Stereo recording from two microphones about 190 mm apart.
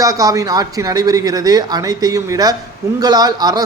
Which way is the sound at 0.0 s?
20° right (ahead or behind).